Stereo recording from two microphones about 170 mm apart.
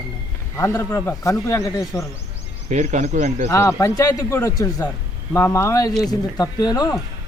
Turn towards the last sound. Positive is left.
turn(degrees=25)  # may be behind; listen again after turning